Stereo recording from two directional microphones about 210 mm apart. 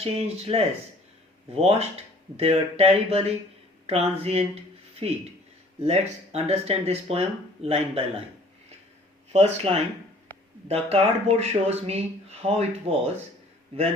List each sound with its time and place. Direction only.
0.0 s speech: 30° right (ahead or behind)
5.8 s speech: 30° right (ahead or behind)
9.3 s speech: 30° right (ahead or behind)